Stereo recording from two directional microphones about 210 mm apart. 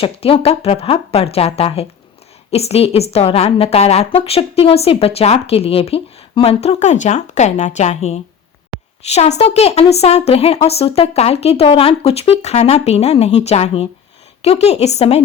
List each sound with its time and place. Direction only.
0.0 s a woman's voice: 25° left (ahead or behind)